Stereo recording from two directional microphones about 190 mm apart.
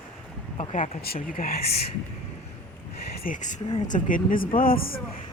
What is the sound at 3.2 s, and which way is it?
Speech, 45° left (ahead or behind).